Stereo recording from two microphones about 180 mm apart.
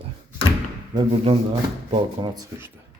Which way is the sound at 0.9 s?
30° right (ahead or behind).